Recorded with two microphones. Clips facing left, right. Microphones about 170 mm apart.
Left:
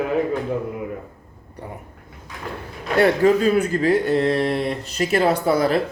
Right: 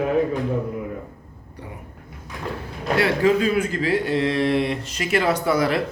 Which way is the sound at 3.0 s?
45° left (ahead or behind).